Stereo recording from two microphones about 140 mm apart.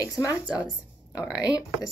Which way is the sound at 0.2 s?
10° right (ahead or behind).